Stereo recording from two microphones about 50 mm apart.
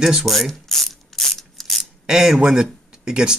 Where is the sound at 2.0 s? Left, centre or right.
Centre.